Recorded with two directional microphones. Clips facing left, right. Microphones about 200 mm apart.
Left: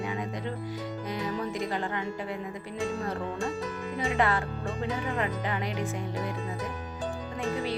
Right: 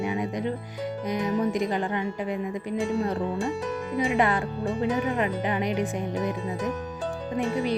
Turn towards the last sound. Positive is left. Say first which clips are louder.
# right 5 dB
turn(degrees=-15)  # may be behind; listen again after turning